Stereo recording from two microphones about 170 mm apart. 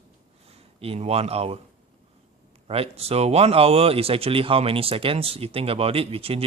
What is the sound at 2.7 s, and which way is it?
Speech, 35° right (ahead or behind).